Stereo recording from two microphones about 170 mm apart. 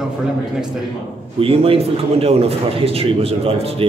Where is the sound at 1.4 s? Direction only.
35° right (ahead or behind).